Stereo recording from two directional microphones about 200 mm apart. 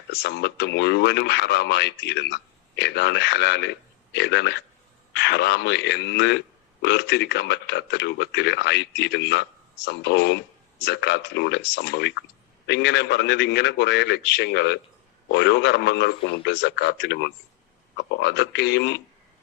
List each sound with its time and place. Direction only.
0.1 s speech: 55° left (ahead or behind)